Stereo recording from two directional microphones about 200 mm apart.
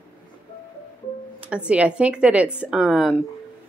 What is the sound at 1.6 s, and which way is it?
A woman's voice, 5° right (ahead or behind).